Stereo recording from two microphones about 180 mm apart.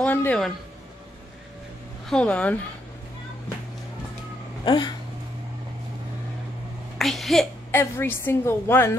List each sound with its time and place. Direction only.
0.0 s speech: 10° left (ahead or behind)
2.0 s a woman's voice: 5° left (ahead or behind)
4.6 s speech: 25° left (ahead or behind)
7.0 s a woman's voice: centre (ahead or behind)
7.7 s a woman's voice: 10° left (ahead or behind)